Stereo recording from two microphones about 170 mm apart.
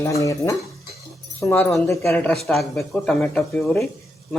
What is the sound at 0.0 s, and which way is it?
Speech, 20° left (ahead or behind).